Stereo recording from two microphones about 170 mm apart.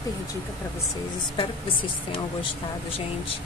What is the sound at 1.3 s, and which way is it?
Speech, 30° left (ahead or behind).